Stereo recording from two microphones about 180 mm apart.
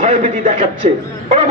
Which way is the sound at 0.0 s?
40° right (ahead or behind).